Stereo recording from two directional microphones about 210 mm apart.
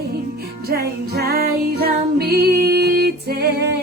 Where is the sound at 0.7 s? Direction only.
50° right (ahead or behind).